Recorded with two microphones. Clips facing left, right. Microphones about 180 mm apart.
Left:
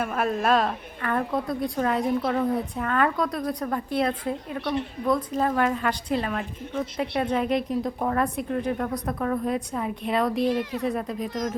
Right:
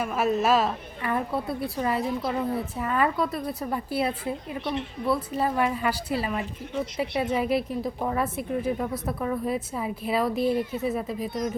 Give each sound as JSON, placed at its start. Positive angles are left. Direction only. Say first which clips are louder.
{"t": 0.0, "sound": "a woman's voice", "louder": "right 1 dB", "side_deg": 0}
{"t": 10.4, "sound": "speech", "louder": "even", "side_deg": 90}
{"t": 10.7, "sound": "a woman's voice", "louder": "left 1 dB", "side_deg": -5}